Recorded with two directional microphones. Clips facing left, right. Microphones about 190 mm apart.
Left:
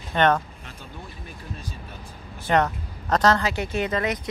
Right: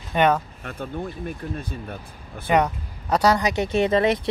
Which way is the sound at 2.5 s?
10° right (ahead or behind).